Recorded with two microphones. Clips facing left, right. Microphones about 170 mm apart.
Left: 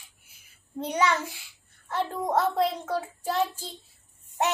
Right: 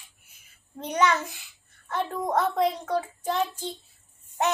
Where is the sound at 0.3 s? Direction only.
10° left (ahead or behind).